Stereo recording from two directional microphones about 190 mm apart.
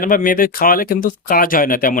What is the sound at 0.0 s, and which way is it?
Speech, 45° left (ahead or behind).